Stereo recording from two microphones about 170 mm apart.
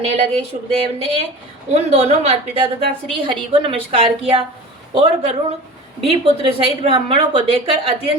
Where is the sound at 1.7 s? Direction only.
35° right (ahead or behind).